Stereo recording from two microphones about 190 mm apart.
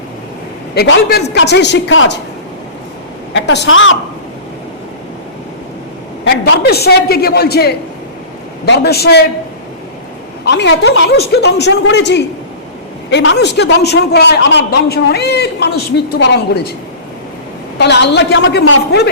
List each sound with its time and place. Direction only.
0.7 s a man's voice: 60° left (ahead or behind); by 2.1 s 80° left
3.3 s a woman's voice: 65° left (ahead or behind); by 3.9 s 90° left
6.2 s a man's voice: 55° left (ahead or behind)
10.4 s a man's voice: 65° left (ahead or behind)
17.7 s a man's voice: 65° left (ahead or behind)